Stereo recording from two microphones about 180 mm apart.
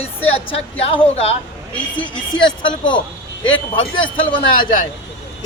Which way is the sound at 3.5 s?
90° left.